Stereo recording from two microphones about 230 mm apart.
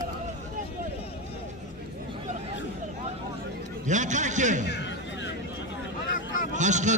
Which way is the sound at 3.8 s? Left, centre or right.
Right.